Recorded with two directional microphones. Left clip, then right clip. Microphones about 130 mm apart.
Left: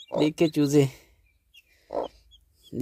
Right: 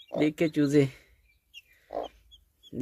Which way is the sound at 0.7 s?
30° left (ahead or behind).